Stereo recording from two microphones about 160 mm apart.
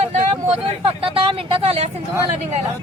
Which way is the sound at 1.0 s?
35° right (ahead or behind).